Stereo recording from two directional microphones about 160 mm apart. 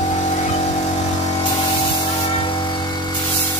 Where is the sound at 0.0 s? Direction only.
50° left (ahead or behind).